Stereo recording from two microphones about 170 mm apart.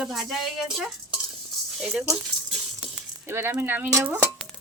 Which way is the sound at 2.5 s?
5° right (ahead or behind).